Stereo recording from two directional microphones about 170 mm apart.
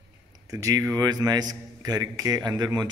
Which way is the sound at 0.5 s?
20° right (ahead or behind).